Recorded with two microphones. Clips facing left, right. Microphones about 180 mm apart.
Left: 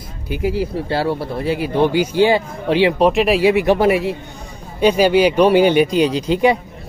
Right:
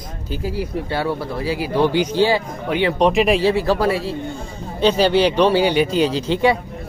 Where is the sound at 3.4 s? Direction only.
20° left (ahead or behind).